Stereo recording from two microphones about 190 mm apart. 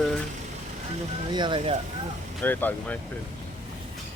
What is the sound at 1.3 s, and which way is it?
Speech, 25° right (ahead or behind).